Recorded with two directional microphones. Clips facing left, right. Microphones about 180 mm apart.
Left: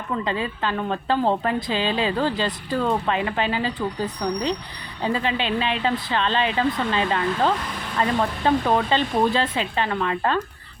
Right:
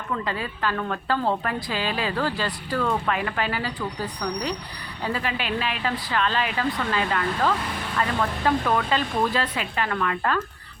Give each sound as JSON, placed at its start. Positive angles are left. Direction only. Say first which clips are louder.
{"t": 0.3, "sound": "speech", "louder": "left 2 dB", "side_deg": 20}